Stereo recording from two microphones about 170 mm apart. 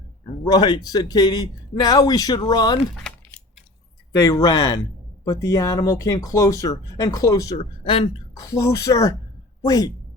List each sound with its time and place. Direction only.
0.4 s speech: 25° left (ahead or behind)
4.2 s speech: 20° left (ahead or behind)